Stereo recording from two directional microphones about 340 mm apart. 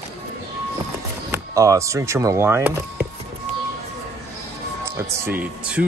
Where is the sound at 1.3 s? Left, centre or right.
Centre.